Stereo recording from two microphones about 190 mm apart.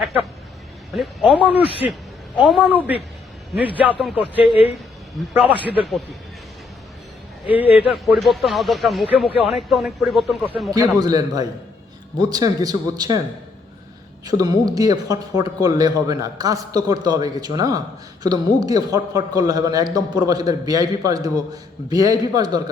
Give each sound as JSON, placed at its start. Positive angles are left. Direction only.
{"t": 0.9, "sound": "speech", "side_deg": -5}
{"t": 1.6, "sound": "a man's voice", "side_deg": 30}
{"t": 2.4, "sound": "a man's voice", "side_deg": -5}
{"t": 5.6, "sound": "speech", "side_deg": -5}
{"t": 7.5, "sound": "speech", "side_deg": -10}
{"t": 10.7, "sound": "a man's voice", "side_deg": -20}
{"t": 14.3, "sound": "a man's voice", "side_deg": -20}